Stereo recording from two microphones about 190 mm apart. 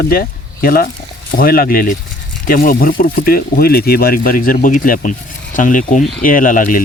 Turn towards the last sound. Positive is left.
turn(degrees=45)  # may be behind; listen again after turning